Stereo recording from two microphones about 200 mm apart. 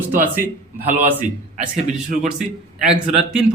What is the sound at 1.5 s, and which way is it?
Speech, 40° right (ahead or behind).